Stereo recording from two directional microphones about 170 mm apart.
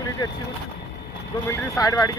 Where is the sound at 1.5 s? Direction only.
20° left (ahead or behind).